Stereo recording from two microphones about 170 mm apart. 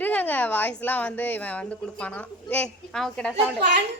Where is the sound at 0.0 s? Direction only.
10° left (ahead or behind).